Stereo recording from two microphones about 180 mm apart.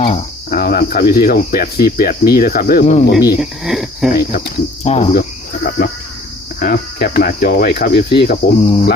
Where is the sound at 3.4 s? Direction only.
Centre (ahead or behind).